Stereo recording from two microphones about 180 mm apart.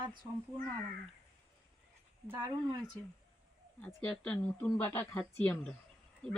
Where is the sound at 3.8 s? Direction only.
5° left (ahead or behind).